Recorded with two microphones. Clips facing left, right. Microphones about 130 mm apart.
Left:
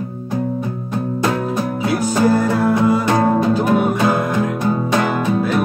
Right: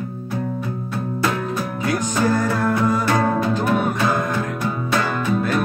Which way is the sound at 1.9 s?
10° left (ahead or behind).